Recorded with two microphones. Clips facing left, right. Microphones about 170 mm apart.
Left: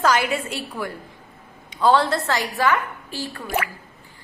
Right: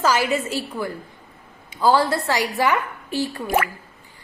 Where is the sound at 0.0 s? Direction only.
5° right (ahead or behind).